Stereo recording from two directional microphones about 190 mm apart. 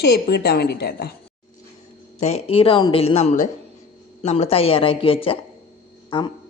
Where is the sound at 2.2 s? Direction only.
35° left (ahead or behind).